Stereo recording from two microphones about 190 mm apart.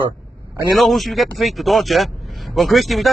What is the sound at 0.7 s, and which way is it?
Speech, centre (ahead or behind).